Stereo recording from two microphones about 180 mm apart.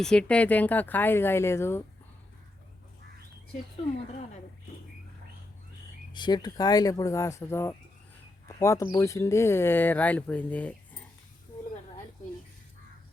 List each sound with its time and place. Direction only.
0.0 s speech: 5° left (ahead or behind)
6.1 s speech: 25° left (ahead or behind)